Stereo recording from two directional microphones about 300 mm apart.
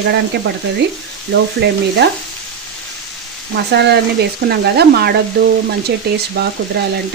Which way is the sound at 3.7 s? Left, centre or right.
Right.